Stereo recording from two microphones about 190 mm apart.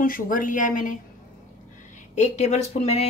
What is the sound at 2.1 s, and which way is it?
Speech, 40° left (ahead or behind).